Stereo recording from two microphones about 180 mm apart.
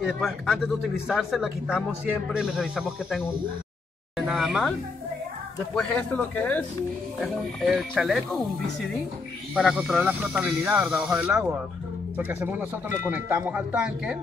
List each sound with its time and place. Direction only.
0.0 s speech: centre (ahead or behind)
5.8 s speech: 5° left (ahead or behind)
9.6 s speech: 5° right (ahead or behind)